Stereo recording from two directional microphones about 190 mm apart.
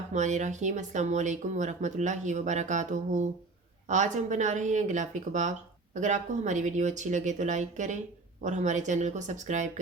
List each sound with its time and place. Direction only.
0.1 s speech: 40° right (ahead or behind)